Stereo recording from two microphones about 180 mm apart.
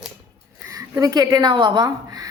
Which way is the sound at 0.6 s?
20° right (ahead or behind).